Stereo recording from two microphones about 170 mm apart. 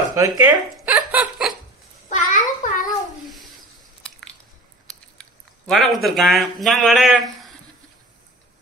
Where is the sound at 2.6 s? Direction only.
50° left (ahead or behind).